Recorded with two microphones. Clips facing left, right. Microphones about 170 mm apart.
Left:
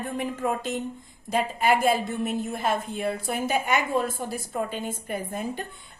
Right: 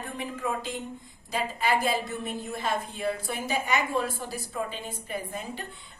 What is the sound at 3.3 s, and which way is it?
A woman's voice, 50° left (ahead or behind).